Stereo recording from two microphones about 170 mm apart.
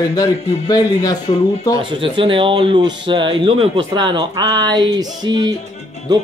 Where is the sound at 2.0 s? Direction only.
30° right (ahead or behind).